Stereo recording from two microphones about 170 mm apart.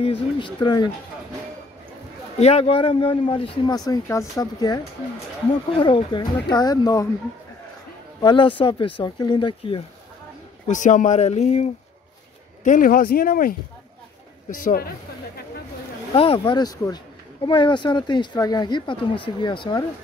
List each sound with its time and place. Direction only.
0.0 s speech: 30° left (ahead or behind)
2.3 s speech: 40° left (ahead or behind); by 7.1 s 20° left (ahead or behind)
8.2 s speech: 30° left (ahead or behind)
10.7 s speech: 45° left (ahead or behind)
12.6 s speech: 55° left (ahead or behind)
14.6 s speech: 55° left (ahead or behind)
16.2 s speech: 30° left (ahead or behind)